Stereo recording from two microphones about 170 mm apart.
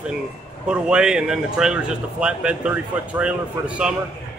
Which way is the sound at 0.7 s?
5° right (ahead or behind).